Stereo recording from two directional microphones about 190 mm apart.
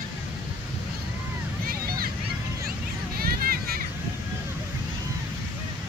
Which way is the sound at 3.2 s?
50° right (ahead or behind).